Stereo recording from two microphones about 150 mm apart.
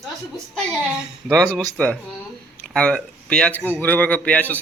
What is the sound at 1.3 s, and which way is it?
Speech, 5° left (ahead or behind).